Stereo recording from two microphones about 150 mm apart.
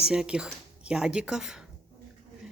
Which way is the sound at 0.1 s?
5° right (ahead or behind).